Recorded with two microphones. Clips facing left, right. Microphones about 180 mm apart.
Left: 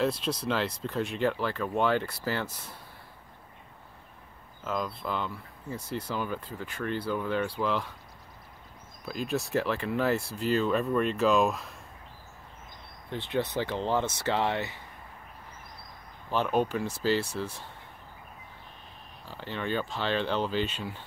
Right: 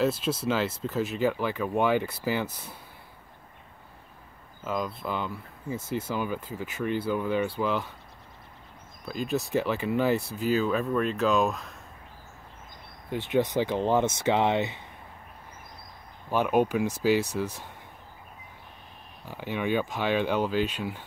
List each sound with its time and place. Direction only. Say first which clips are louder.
0.0 s speech: right 3 dB; 5° right (ahead or behind)
2.4 s speech: right 3 dB; centre (ahead or behind)
4.6 s speech: right 2 dB; 5° right (ahead or behind)
9.0 s speech: right 2 dB; centre (ahead or behind)
13.1 s speech: right 5 dB; 15° right (ahead or behind)
16.3 s speech: right 3 dB; 10° right (ahead or behind)
19.2 s speech: right 4 dB; 15° right (ahead or behind)